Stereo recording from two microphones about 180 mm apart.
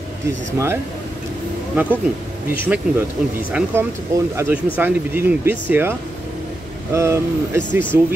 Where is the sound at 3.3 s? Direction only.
10° right (ahead or behind).